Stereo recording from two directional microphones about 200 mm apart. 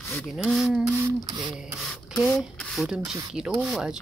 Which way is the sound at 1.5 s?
5° right (ahead or behind).